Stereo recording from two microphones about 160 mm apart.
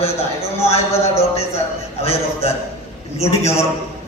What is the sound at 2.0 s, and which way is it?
Speech, 40° left (ahead or behind).